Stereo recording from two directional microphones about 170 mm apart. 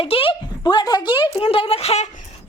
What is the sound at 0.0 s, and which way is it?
Speech, 35° left (ahead or behind).